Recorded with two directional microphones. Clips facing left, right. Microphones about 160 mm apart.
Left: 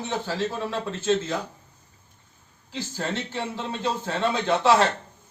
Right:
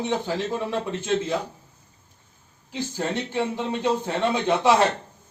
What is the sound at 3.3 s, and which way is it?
Speech, 15° right (ahead or behind).